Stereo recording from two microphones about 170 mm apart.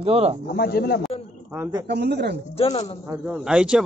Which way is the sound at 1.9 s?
80° right.